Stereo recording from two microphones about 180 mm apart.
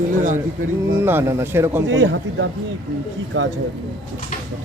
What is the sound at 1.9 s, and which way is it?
Speech, 90° right.